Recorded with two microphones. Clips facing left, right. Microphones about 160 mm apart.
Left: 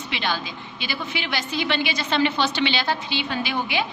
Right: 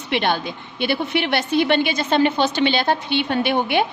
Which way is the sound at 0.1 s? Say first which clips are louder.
Right 7 dB; 55° right (ahead or behind).